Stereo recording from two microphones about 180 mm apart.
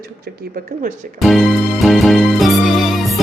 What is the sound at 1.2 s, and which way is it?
Music, centre (ahead or behind).